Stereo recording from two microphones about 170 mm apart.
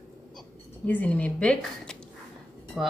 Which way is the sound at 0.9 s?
10° left (ahead or behind).